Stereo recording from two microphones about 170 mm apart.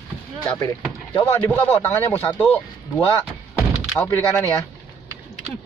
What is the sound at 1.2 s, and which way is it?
Speech, 10° left (ahead or behind).